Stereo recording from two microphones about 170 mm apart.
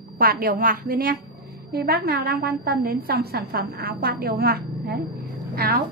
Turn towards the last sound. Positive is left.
turn(degrees=-60)  # may be behind; listen again after turning